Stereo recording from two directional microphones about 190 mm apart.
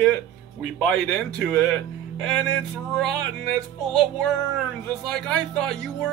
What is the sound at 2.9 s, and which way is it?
Music, centre (ahead or behind).